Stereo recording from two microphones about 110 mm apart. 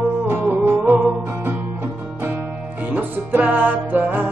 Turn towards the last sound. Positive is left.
turn(degrees=-15)  # may be behind; listen again after turning